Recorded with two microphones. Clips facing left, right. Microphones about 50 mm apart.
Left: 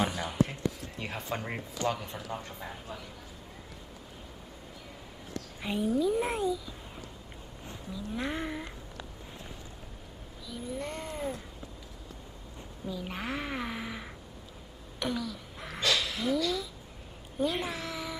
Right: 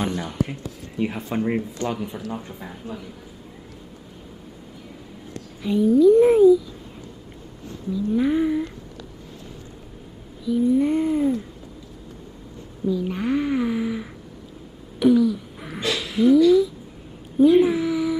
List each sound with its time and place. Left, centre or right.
0.1 s speech: centre
0.5 s speech: centre
1.9 s a sound: centre
2.3 s a woman's voice: centre
5.6 s a woman's voice: centre
7.9 s a woman's voice: centre
10.4 s a sound: centre
12.8 s a woman's voice: centre
15.0 s a sound: centre